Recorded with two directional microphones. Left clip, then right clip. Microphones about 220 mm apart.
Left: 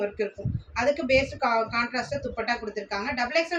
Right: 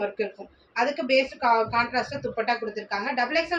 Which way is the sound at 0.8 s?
15° left (ahead or behind).